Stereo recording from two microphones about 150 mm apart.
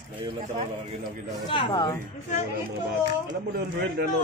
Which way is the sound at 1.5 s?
35° left (ahead or behind).